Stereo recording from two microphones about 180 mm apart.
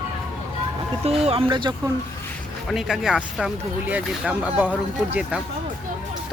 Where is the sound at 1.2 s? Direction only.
30° right (ahead or behind).